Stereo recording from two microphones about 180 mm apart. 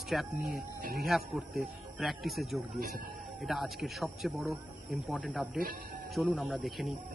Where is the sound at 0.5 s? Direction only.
60° right (ahead or behind).